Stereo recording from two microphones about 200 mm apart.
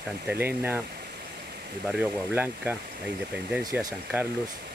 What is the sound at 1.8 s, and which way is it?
Speech, 5° right (ahead or behind).